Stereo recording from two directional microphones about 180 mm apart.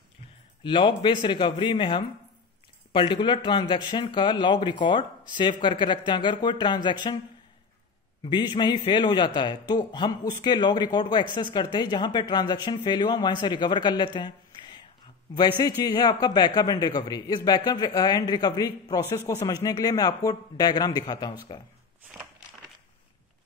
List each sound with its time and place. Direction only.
0.7 s speech: 25° left (ahead or behind)
8.2 s speech: 25° left (ahead or behind)